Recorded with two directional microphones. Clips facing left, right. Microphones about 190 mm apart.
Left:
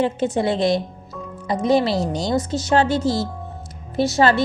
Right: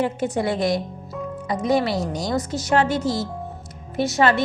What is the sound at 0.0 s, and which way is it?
A woman's voice, 25° left (ahead or behind).